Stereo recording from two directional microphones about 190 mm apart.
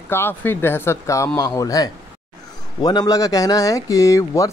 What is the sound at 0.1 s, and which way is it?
Speech, 10° left (ahead or behind).